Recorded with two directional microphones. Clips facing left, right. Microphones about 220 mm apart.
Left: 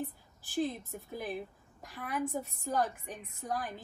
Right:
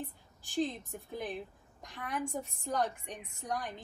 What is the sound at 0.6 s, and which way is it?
A woman's voice, 5° left (ahead or behind).